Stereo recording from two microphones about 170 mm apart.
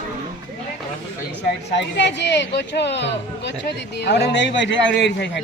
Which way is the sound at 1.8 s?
90° left.